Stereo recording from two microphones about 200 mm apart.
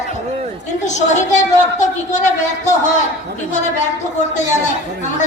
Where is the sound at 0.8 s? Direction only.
35° left (ahead or behind).